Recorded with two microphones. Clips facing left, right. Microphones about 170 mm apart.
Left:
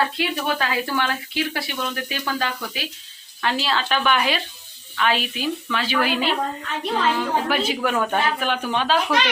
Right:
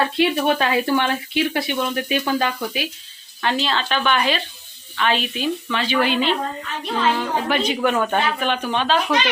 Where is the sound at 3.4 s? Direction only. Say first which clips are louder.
Right 1 dB; centre (ahead or behind).